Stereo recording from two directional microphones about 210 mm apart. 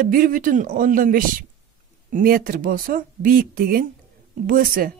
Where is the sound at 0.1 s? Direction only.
40° right (ahead or behind).